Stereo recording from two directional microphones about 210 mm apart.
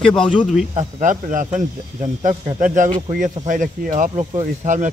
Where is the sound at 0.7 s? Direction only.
35° right (ahead or behind).